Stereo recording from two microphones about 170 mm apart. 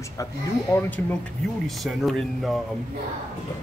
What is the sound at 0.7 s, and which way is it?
Speech, 20° left (ahead or behind).